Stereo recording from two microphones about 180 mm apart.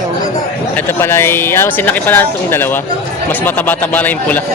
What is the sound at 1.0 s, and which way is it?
Speech, 15° left (ahead or behind).